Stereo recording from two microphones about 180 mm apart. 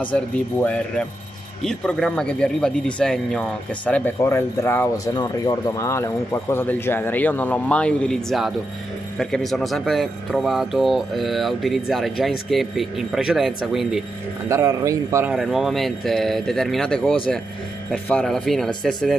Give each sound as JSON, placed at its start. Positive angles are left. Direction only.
{"t": 0.0, "sound": "a man's voice", "side_deg": 10}
{"t": 14.5, "sound": "a man's voice", "side_deg": -15}
{"t": 15.3, "sound": "speech", "side_deg": 0}